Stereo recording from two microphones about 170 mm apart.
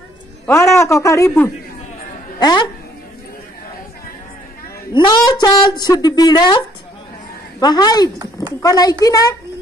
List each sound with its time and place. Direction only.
0.5 s a man's voice: 15° left (ahead or behind)
4.9 s a woman's voice: 25° left (ahead or behind)
7.6 s a woman's voice: 25° left (ahead or behind)